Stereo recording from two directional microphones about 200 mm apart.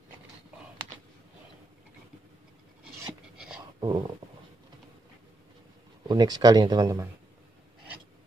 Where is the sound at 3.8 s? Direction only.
20° right (ahead or behind).